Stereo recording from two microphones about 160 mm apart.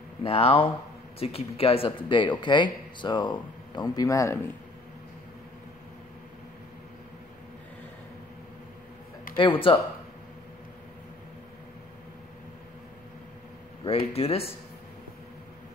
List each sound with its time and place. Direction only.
0.2 s speech: 35° left (ahead or behind); by 4.4 s 20° left (ahead or behind)
9.4 s speech: 35° left (ahead or behind)
13.8 s speech: 40° left (ahead or behind)